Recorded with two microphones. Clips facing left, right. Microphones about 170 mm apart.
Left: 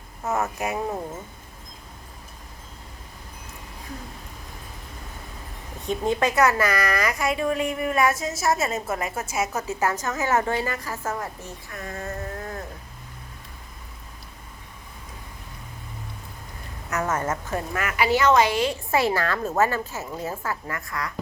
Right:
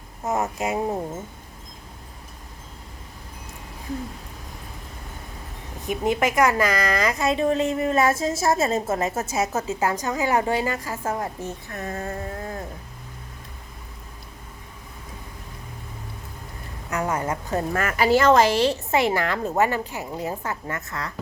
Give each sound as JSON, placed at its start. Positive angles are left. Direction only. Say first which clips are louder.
{"t": 0.3, "sound": "a woman's voice", "louder": "right 1 dB", "side_deg": -20}
{"t": 6.1, "sound": "a woman's voice", "louder": "right 1 dB", "side_deg": -15}
{"t": 11.0, "sound": "a woman's voice", "louder": "right 3 dB", "side_deg": -30}
{"t": 16.9, "sound": "a woman's voice", "louder": "even", "side_deg": -15}
{"t": 17.7, "sound": "a woman's voice", "louder": "right 3 dB", "side_deg": -45}
{"t": 18.9, "sound": "a woman's voice", "louder": "right 1 dB", "side_deg": -20}